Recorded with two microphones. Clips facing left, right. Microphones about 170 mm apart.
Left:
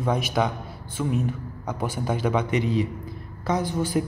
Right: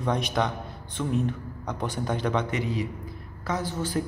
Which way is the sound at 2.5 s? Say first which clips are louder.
Left 5 dB; 25° left (ahead or behind).